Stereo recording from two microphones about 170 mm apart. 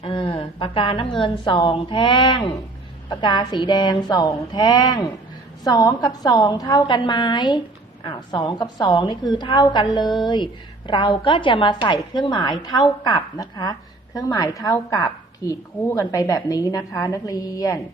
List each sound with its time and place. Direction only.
0.0 s a woman's voice: 30° left (ahead or behind)